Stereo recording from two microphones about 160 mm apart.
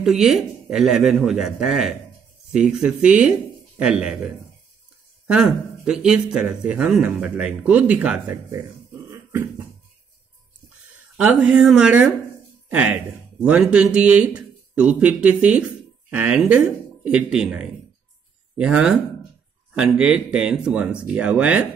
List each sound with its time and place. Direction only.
0.0 s a man's voice: 5° right (ahead or behind)
9.1 s dog: 15° right (ahead or behind)
11.1 s a man's voice: 5° right (ahead or behind)